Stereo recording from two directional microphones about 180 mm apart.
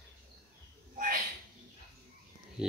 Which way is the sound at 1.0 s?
50° right (ahead or behind).